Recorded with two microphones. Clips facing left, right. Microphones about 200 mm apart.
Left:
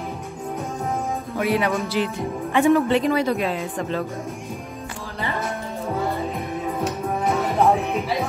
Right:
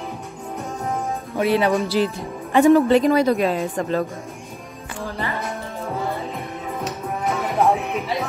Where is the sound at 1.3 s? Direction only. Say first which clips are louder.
Right 4 dB; 30° right (ahead or behind).